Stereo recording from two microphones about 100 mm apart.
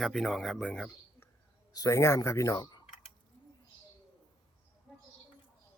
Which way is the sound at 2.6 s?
45° left (ahead or behind).